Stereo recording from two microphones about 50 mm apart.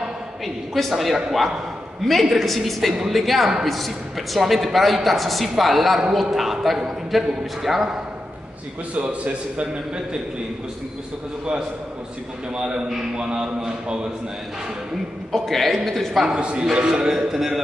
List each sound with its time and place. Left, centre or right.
0.7 s speech: centre
2.9 s a man's voice: centre
3.2 s speech: centre
8.9 s a man's voice: right
12.5 s a man's voice: centre
15.3 s speech: centre
16.3 s a man's voice: centre